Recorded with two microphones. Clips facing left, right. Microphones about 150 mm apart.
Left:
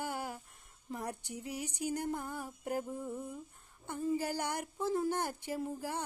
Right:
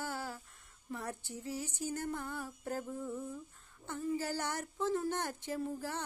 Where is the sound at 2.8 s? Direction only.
25° left (ahead or behind).